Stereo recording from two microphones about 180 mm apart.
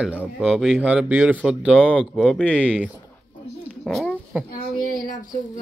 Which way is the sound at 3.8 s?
Centre (ahead or behind).